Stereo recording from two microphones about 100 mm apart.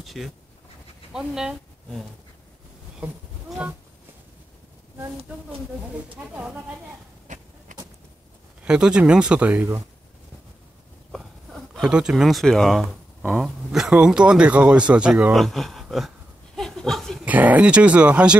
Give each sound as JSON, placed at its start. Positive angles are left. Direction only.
{"t": 0.0, "sound": "speech", "side_deg": 0}
{"t": 6.3, "sound": "speech", "side_deg": -20}
{"t": 8.6, "sound": "speech", "side_deg": -10}
{"t": 11.1, "sound": "a sound", "side_deg": 0}
{"t": 11.9, "sound": "speech", "side_deg": -10}
{"t": 15.3, "sound": "speech", "side_deg": 0}
{"t": 16.5, "sound": "a sound", "side_deg": 5}
{"t": 17.2, "sound": "speech", "side_deg": -15}